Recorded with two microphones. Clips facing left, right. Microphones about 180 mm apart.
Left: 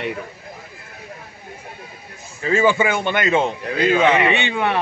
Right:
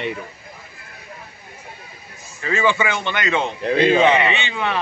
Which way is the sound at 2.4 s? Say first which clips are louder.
Left 3 dB; 50° left (ahead or behind).